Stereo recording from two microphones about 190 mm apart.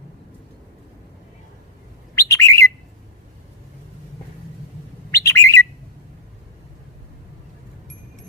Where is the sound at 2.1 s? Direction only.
15° left (ahead or behind).